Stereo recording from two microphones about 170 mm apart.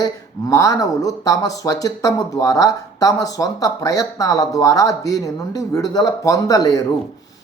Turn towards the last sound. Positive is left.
turn(degrees=20)  # may be behind; listen again after turning